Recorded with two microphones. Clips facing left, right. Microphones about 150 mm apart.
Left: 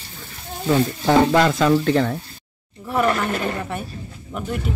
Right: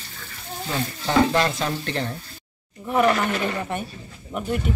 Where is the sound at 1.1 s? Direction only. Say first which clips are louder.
Left 4 dB; 90° left.